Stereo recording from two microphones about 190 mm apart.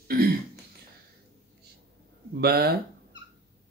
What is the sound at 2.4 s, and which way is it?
Speech, 55° right (ahead or behind).